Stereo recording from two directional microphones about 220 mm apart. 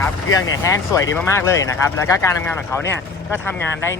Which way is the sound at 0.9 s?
15° left (ahead or behind).